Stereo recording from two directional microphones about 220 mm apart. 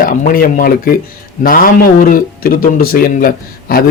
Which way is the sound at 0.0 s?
40° left (ahead or behind).